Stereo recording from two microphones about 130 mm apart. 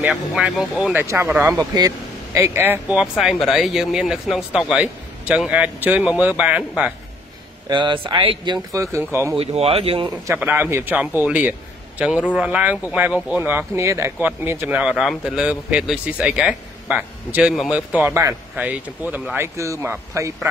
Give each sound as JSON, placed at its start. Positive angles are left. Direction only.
{"t": 0.0, "sound": "speech", "side_deg": -10}
{"t": 1.0, "sound": "speech", "side_deg": -20}
{"t": 3.2, "sound": "speech", "side_deg": 0}
{"t": 7.6, "sound": "speech", "side_deg": -35}
{"t": 8.7, "sound": "speech", "side_deg": -20}
{"t": 9.4, "sound": "speech", "side_deg": -50}
{"t": 10.2, "sound": "speech", "side_deg": -15}
{"t": 18.0, "sound": "speech", "side_deg": -20}